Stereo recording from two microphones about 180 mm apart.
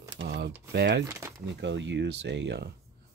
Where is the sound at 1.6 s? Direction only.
85° right.